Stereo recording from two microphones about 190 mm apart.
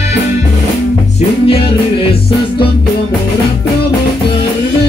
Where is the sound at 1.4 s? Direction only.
30° left (ahead or behind).